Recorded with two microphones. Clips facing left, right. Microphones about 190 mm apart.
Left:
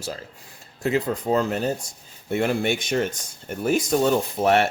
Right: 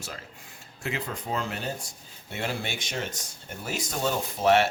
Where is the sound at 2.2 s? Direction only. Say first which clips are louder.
Left 10 dB; 50° left (ahead or behind).